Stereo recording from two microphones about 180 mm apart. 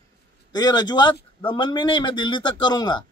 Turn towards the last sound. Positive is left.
turn(degrees=25)  # may be behind; listen again after turning